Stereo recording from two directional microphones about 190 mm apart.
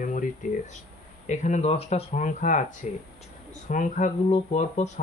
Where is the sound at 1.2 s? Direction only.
40° left (ahead or behind).